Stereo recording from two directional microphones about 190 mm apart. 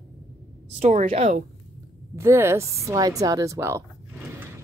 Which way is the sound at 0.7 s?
40° right (ahead or behind).